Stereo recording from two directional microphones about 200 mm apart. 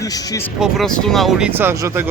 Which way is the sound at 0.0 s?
15° left (ahead or behind).